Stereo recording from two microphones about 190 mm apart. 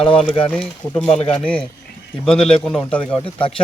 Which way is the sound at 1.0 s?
35° left (ahead or behind).